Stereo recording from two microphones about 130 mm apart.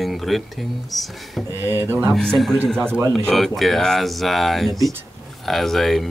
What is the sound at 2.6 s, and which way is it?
Speech, 5° left (ahead or behind).